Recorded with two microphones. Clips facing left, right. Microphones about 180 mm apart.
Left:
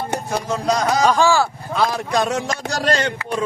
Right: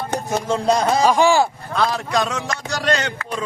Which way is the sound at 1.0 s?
15° right (ahead or behind).